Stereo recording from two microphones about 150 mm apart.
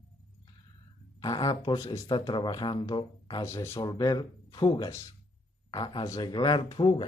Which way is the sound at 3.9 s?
25° left (ahead or behind).